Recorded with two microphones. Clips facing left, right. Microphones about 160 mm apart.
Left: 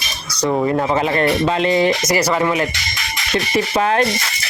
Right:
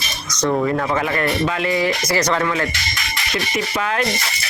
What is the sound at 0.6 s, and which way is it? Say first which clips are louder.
Speech: left 3 dB; 25° left (ahead or behind).